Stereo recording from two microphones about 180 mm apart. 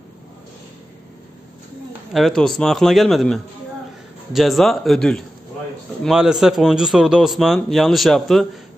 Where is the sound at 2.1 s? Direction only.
Centre (ahead or behind).